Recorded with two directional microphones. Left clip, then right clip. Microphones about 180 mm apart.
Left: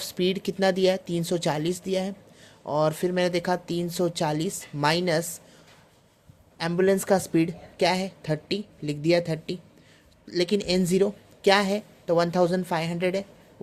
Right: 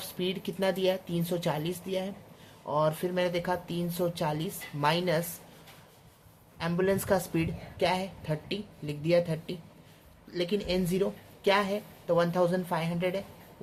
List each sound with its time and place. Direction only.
0.0 s a woman's voice: 40° left (ahead or behind)
6.6 s a woman's voice: 40° left (ahead or behind)